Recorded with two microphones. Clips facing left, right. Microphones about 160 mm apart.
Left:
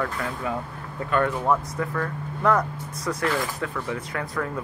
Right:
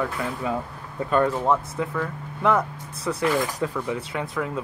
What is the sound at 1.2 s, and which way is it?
Speech, 10° right (ahead or behind).